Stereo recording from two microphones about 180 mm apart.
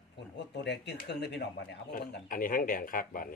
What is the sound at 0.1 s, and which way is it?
Speech, 70° left (ahead or behind).